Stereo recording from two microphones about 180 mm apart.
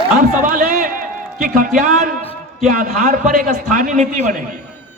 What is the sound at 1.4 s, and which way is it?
A man's voice, 50° right (ahead or behind).